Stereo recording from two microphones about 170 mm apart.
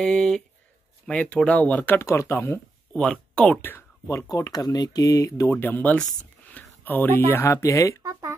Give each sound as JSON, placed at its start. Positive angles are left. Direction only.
{"t": 0.0, "sound": "speech", "side_deg": 0}
{"t": 8.0, "sound": "speech", "side_deg": -15}